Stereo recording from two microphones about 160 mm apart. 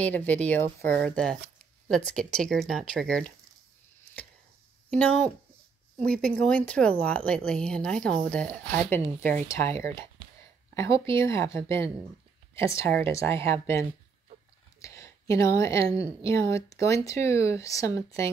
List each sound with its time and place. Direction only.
0.0 s speech: 10° left (ahead or behind)
4.9 s speech: 5° left (ahead or behind)
10.7 s a sound: 15° left (ahead or behind)
11.1 s speech: 20° left (ahead or behind)
14.8 s a sound: 20° left (ahead or behind)
16.2 s speech: 20° left (ahead or behind)